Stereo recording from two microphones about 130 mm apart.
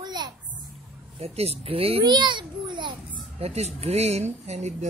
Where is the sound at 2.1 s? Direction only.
35° right (ahead or behind).